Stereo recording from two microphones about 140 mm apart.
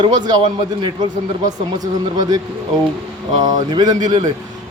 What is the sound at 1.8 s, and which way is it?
Speech, 30° right (ahead or behind).